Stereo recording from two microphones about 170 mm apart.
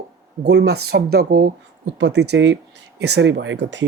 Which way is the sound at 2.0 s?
85° right.